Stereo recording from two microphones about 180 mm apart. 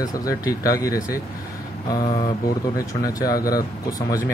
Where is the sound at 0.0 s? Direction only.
20° left (ahead or behind).